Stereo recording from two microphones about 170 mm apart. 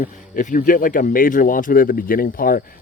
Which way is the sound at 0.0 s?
50° left (ahead or behind).